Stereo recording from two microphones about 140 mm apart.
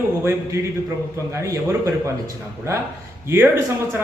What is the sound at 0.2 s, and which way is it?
A man's voice, 20° right (ahead or behind).